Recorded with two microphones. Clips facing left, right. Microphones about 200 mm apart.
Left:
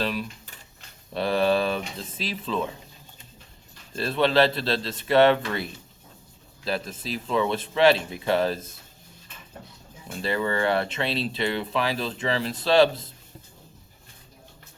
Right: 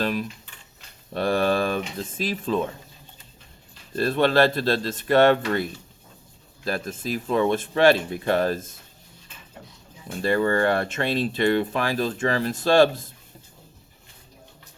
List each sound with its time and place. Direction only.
0.0 s speech: 45° right (ahead or behind)
3.9 s speech: 45° right (ahead or behind)
6.7 s speech: 50° right (ahead or behind)
10.2 s speech: 45° right (ahead or behind)